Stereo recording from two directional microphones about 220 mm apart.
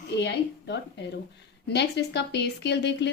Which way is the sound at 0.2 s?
50° left (ahead or behind).